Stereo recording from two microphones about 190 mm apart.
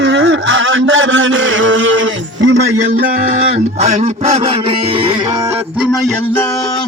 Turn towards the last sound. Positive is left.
turn(degrees=0)  # may be behind; listen again after turning